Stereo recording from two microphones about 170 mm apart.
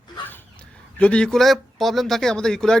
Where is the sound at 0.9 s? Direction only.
5° left (ahead or behind).